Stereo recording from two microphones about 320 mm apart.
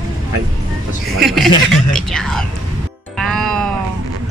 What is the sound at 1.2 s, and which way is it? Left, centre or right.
Speech, centre.